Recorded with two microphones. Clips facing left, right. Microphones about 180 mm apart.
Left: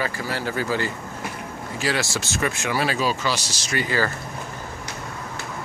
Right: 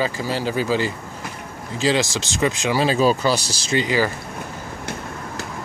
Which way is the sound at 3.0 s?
40° right (ahead or behind).